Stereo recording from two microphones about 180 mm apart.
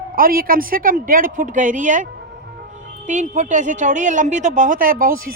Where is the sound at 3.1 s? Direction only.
40° right (ahead or behind).